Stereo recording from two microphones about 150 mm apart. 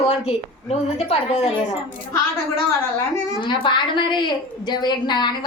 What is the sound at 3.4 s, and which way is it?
A woman's voice, 30° left (ahead or behind).